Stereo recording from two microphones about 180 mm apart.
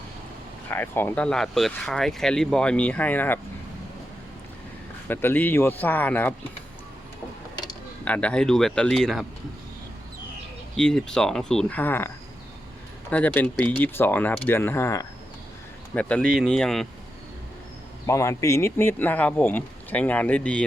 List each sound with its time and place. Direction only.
0.7 s speech: 10° left (ahead or behind)
5.0 s speech: 10° left (ahead or behind)
7.5 s mechanisms: 25° left (ahead or behind)
8.0 s speech: 5° left (ahead or behind)
10.8 s speech: 5° left (ahead or behind)
18.0 s speech: 15° left (ahead or behind)